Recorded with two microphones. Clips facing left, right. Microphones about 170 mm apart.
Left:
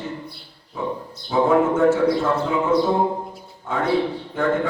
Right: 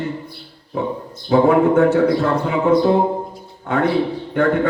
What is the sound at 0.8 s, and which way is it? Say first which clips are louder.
A man's voice: right 4 dB; 70° right (ahead or behind).